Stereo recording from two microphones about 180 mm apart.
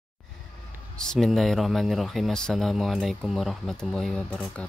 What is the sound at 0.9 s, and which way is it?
Speech, 5° left (ahead or behind).